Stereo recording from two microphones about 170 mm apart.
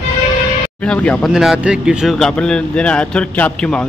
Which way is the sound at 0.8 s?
10° left (ahead or behind).